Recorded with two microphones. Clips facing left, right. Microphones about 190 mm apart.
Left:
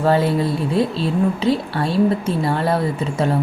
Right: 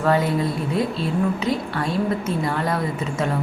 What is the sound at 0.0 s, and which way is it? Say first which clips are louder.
A woman's voice: left 3 dB; 30° left (ahead or behind).